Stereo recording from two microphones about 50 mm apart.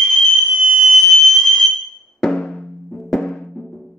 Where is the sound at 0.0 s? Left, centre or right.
Centre.